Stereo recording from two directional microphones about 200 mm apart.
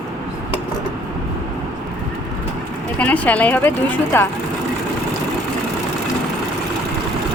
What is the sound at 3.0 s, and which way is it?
A woman's voice, 5° left (ahead or behind).